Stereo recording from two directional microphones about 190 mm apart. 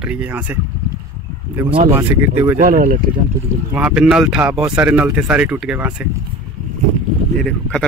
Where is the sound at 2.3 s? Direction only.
15° right (ahead or behind).